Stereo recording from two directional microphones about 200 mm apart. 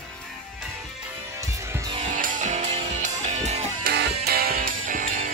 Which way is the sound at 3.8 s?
50° right (ahead or behind).